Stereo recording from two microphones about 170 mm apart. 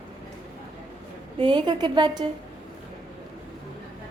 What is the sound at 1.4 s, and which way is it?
Speech, 25° right (ahead or behind).